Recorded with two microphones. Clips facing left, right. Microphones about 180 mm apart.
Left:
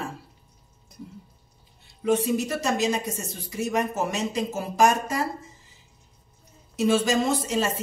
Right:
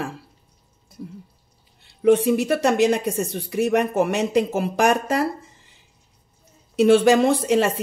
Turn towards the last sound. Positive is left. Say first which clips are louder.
# right 7 dB
turn(degrees=-65)  # may be behind; listen again after turning